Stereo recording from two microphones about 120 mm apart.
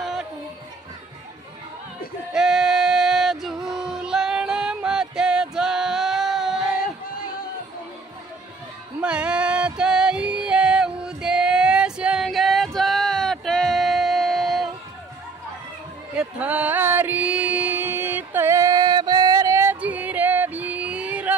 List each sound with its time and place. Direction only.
0.0 s chatter: centre (ahead or behind)
2.3 s female singing: 5° right (ahead or behind)
9.0 s music: 10° right (ahead or behind)
16.2 s music: 10° right (ahead or behind)
19.8 s a sound: 15° right (ahead or behind)